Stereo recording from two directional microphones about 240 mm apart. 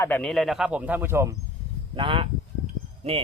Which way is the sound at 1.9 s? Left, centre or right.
Right.